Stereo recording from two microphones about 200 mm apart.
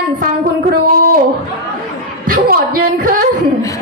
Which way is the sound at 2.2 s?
45° right (ahead or behind).